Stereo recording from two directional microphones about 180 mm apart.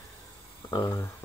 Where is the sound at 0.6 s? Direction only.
20° left (ahead or behind).